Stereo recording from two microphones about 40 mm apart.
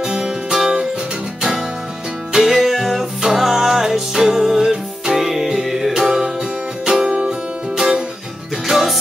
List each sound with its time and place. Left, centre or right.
0.0 s music: centre
2.3 s music: centre
8.6 s music: centre